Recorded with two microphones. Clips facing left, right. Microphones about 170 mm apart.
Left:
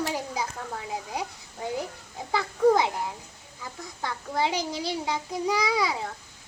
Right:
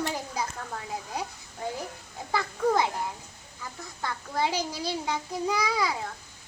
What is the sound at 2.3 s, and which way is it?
Children playing, 15° left (ahead or behind).